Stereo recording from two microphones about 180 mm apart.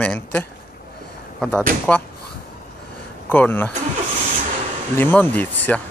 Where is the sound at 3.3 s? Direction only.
10° left (ahead or behind).